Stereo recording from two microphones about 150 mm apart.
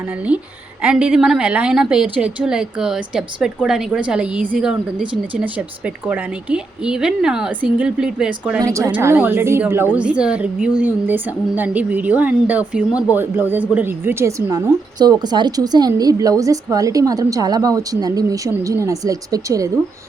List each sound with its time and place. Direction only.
0.8 s a woman's voice: 5° right (ahead or behind)
8.6 s a woman's voice: 20° right (ahead or behind)